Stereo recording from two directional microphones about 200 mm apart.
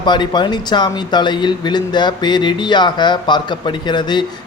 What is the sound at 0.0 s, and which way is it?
A man's voice, 20° left (ahead or behind).